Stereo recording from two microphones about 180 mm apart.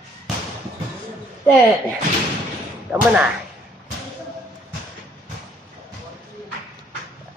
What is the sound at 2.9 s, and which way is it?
Speech, 5° right (ahead or behind).